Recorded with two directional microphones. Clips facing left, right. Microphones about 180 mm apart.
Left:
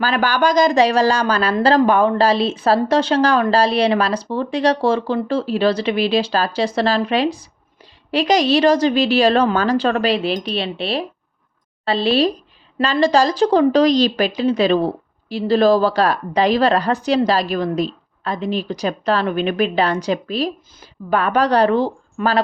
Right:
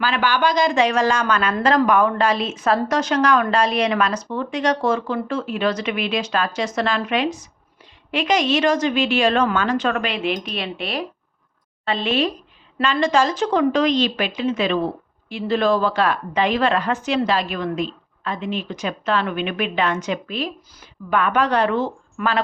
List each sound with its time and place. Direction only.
0.0 s speech: 40° left (ahead or behind)